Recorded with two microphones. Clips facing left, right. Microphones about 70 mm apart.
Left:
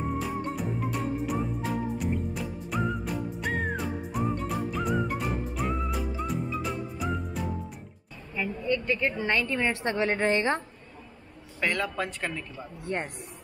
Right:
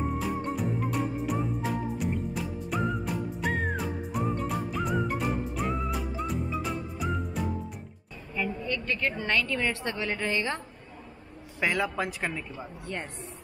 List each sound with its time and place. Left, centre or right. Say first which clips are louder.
0.0 s music: even; centre
8.6 s a woman's voice: left 3 dB; centre; by 10.6 s left
11.6 s a man's voice: right 1 dB; centre
12.8 s a woman's voice: left 6 dB; left